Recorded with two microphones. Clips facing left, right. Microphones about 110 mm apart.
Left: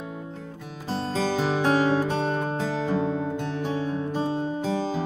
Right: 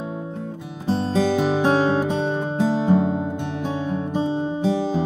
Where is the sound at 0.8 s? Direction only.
15° right (ahead or behind).